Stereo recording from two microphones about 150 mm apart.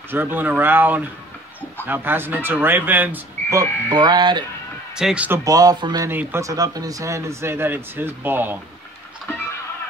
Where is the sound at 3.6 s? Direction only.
30° right (ahead or behind).